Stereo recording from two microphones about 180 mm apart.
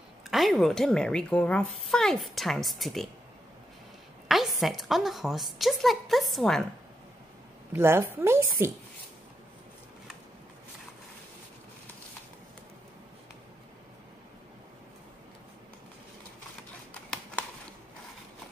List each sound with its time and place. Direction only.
0.3 s a woman's voice: centre (ahead or behind)
4.3 s a woman's voice: centre (ahead or behind)
7.7 s a woman's voice: 15° right (ahead or behind)